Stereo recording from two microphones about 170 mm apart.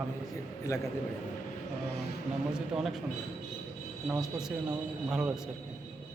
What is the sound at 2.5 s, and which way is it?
Speech, 5° right (ahead or behind).